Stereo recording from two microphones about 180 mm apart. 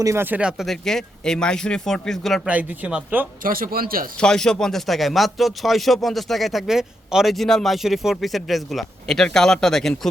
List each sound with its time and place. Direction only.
0.0 s speech: 15° right (ahead or behind)
3.4 s a man's voice: 55° right (ahead or behind)
4.2 s speech: 5° left (ahead or behind)